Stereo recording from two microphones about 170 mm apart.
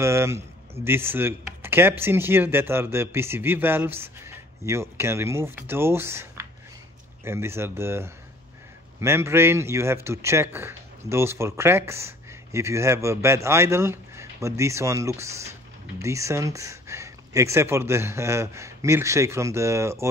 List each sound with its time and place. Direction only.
0.0 s speech: 15° right (ahead or behind)